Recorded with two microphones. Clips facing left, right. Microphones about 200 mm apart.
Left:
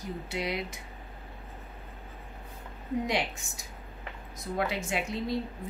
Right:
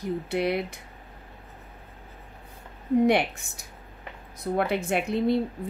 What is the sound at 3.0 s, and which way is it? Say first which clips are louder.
Speech: right 9 dB; 60° right (ahead or behind).